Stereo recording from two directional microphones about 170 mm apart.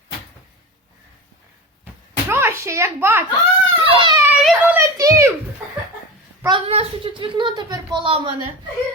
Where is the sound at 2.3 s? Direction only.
15° right (ahead or behind).